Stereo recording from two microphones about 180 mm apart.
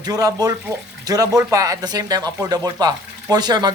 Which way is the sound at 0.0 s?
20° right (ahead or behind).